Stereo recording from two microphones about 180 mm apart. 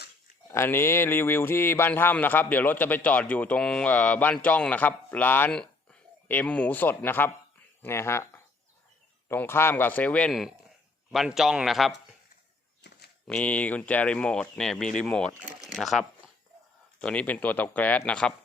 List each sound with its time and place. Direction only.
0.5 s speech: 15° left (ahead or behind)
12.8 s walk: 65° left (ahead or behind)
13.2 s speech: 5° left (ahead or behind)
15.7 s a sound: centre (ahead or behind)
17.0 s speech: 5° left (ahead or behind)